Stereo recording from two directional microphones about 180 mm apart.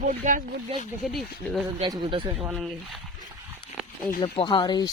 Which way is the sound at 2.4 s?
Centre (ahead or behind).